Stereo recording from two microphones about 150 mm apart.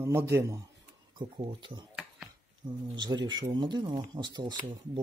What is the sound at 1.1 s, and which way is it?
Speech, 35° right (ahead or behind).